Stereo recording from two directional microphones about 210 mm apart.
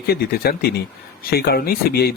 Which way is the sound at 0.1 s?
45° left (ahead or behind).